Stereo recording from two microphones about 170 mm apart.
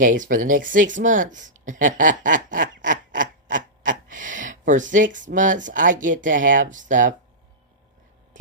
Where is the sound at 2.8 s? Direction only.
50° right (ahead or behind).